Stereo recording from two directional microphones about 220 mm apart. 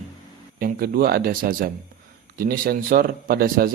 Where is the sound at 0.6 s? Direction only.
40° right (ahead or behind).